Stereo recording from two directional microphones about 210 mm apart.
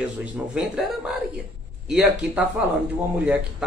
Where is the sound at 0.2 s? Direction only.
5° right (ahead or behind).